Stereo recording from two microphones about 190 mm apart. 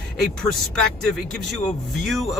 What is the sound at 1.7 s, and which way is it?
Speech, centre (ahead or behind).